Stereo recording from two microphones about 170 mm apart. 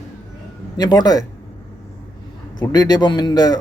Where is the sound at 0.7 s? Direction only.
25° left (ahead or behind).